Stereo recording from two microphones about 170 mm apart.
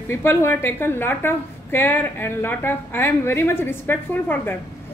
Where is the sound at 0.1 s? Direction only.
15° left (ahead or behind).